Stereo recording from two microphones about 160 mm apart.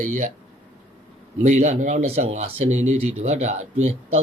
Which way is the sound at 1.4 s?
45° right (ahead or behind).